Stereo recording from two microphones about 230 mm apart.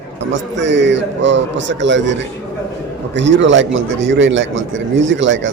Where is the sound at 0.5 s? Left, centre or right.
Right.